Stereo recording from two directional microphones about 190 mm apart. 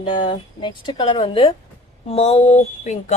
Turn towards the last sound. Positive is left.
turn(degrees=35)  # may be behind; listen again after turning